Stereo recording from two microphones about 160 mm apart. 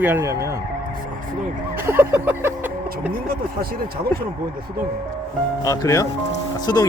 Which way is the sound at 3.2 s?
70° right (ahead or behind).